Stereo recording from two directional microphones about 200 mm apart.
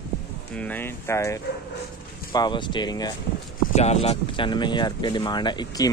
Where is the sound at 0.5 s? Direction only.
10° left (ahead or behind).